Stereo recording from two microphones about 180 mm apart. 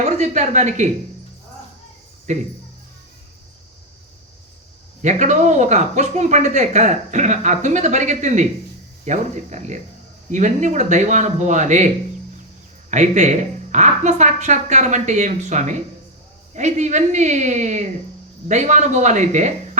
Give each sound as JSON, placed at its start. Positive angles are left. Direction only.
{"t": 0.2, "sound": "speech", "side_deg": -40}
{"t": 2.3, "sound": "speech", "side_deg": -40}
{"t": 5.0, "sound": "speech", "side_deg": -40}
{"t": 12.9, "sound": "speech", "side_deg": -40}